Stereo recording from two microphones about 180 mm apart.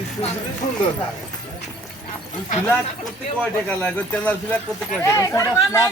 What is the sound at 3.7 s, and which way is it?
Speech, 10° left (ahead or behind).